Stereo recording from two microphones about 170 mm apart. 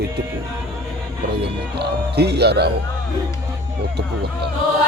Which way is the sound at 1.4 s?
75° right (ahead or behind).